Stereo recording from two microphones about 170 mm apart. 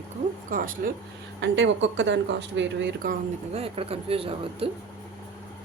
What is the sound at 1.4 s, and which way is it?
Speech, 90° right.